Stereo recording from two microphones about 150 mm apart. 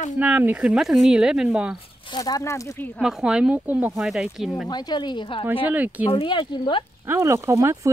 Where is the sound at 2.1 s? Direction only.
25° left (ahead or behind).